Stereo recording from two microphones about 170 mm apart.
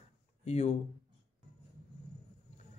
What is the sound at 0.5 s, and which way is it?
Speech, 40° left (ahead or behind).